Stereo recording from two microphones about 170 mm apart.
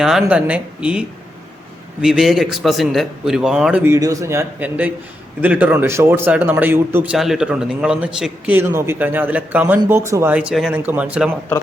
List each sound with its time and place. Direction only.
0.0 s a man's voice: 5° right (ahead or behind)
3.8 s speech: 20° right (ahead or behind)